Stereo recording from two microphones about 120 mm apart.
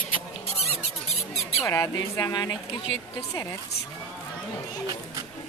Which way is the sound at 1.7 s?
25° left (ahead or behind).